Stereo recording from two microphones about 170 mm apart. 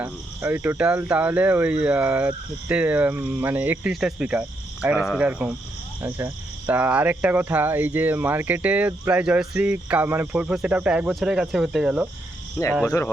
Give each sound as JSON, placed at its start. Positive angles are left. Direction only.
{"t": 0.0, "sound": "speech", "side_deg": -10}
{"t": 12.6, "sound": "speech", "side_deg": 15}